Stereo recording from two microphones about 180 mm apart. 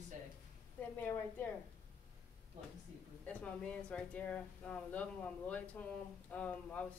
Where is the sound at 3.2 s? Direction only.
5° left (ahead or behind).